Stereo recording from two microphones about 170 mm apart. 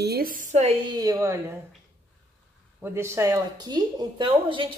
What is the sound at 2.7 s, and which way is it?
Speech, 15° right (ahead or behind).